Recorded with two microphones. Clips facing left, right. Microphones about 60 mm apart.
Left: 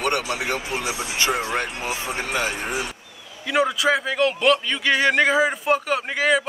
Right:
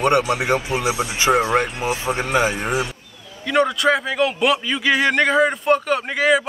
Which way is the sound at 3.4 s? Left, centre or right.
Centre.